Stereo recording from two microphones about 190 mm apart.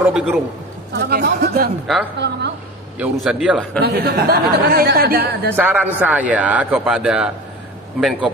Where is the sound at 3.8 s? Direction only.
60° right (ahead or behind).